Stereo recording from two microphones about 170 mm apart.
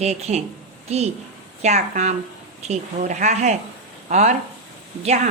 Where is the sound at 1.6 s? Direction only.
45° right (ahead or behind).